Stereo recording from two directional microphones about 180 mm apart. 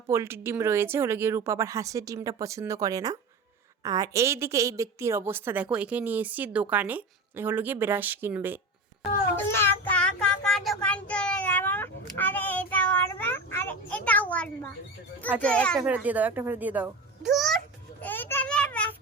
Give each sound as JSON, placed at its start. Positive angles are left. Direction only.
{"t": 0.1, "sound": "a woman's voice", "side_deg": -15}
{"t": 9.3, "sound": "child singing", "side_deg": 10}
{"t": 15.4, "sound": "a child's voice", "side_deg": 5}
{"t": 15.8, "sound": "a child's voice", "side_deg": -10}
{"t": 18.0, "sound": "a sound", "side_deg": 10}